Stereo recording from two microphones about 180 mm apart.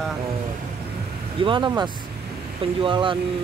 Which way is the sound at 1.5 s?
25° right (ahead or behind).